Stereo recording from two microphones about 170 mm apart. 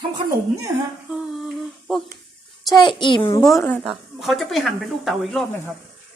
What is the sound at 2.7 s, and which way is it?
Speech, 30° left (ahead or behind).